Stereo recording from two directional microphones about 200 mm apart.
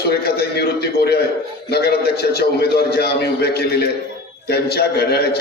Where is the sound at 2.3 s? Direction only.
50° left (ahead or behind).